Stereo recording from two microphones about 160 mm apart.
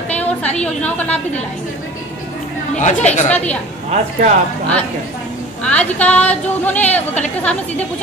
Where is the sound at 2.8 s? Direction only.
45° left (ahead or behind).